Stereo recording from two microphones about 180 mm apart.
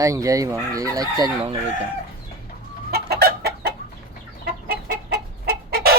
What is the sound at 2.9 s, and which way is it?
Chicken, 60° right (ahead or behind).